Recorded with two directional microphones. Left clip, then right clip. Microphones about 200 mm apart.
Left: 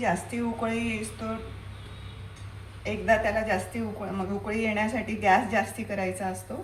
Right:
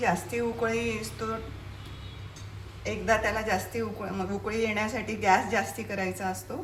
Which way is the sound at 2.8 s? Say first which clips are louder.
Left 2 dB; 20° right (ahead or behind).